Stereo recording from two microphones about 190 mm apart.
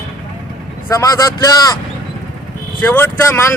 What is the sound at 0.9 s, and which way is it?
Speech, 15° left (ahead or behind).